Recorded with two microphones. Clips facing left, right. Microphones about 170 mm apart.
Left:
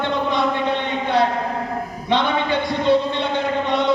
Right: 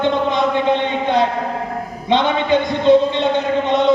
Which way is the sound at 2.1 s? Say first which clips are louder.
Right 4 dB; 20° right (ahead or behind).